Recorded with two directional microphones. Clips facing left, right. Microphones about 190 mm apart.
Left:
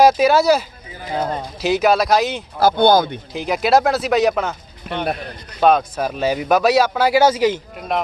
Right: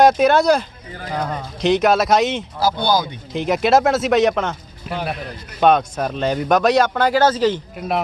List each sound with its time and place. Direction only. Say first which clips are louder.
0.0 s speech: even; centre (ahead or behind)
1.1 s speech: left 2 dB; 25° left (ahead or behind)
1.6 s speech: right 1 dB; centre (ahead or behind)
2.6 s speech: left 6 dB; 55° left (ahead or behind)
3.3 s speech: right 1 dB; centre (ahead or behind)